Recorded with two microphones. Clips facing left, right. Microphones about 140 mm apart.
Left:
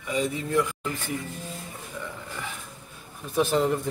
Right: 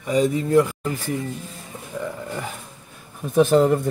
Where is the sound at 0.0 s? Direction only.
40° right (ahead or behind).